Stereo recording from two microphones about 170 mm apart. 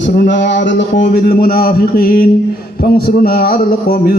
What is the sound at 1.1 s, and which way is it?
Speech, 60° left (ahead or behind).